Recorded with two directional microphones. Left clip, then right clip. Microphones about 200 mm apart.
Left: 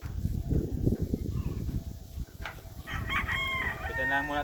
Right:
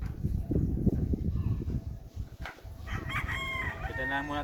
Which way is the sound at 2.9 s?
15° right (ahead or behind).